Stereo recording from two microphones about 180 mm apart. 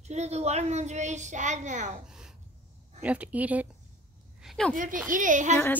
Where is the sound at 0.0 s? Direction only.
40° right (ahead or behind).